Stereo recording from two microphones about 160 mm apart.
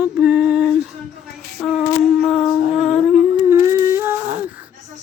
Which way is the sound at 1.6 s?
5° left (ahead or behind).